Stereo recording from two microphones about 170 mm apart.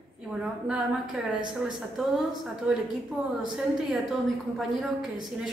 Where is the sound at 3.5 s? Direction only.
Centre (ahead or behind).